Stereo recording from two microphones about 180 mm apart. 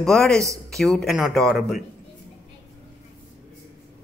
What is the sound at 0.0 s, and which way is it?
A man's voice, 5° left (ahead or behind).